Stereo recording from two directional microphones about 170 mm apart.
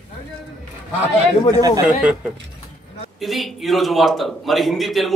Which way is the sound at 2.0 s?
5° right (ahead or behind).